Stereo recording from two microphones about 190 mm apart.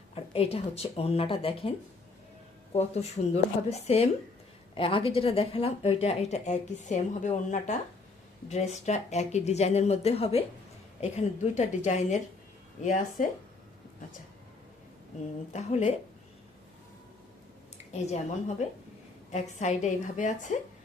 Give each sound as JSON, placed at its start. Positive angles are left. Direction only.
{"t": 0.1, "sound": "speech", "side_deg": 35}
{"t": 2.7, "sound": "speech", "side_deg": 35}
{"t": 15.5, "sound": "speech", "side_deg": 35}
{"t": 18.0, "sound": "speech", "side_deg": 35}